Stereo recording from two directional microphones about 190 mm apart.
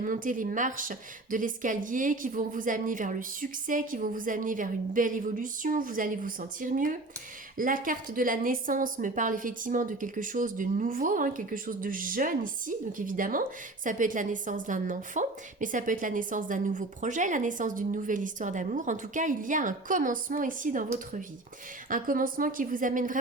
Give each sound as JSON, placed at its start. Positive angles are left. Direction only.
{"t": 0.0, "sound": "a woman's voice", "side_deg": -45}
{"t": 21.8, "sound": "a woman's voice", "side_deg": -45}